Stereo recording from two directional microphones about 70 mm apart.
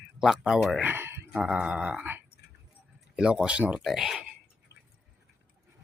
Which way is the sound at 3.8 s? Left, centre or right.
Centre.